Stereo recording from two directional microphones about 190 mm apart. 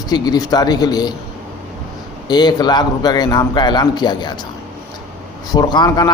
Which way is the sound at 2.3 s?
20° left (ahead or behind).